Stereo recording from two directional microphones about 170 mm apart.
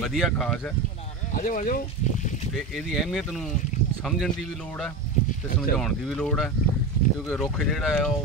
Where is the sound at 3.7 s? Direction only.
45° left (ahead or behind).